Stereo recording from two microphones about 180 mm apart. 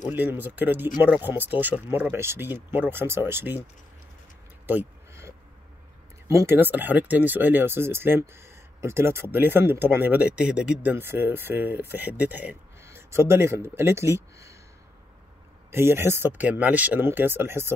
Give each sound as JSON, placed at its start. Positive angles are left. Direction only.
{"t": 0.1, "sound": "speech", "side_deg": -10}
{"t": 4.6, "sound": "a sound", "side_deg": -15}
{"t": 6.2, "sound": "speech", "side_deg": -15}
{"t": 15.7, "sound": "speech", "side_deg": -15}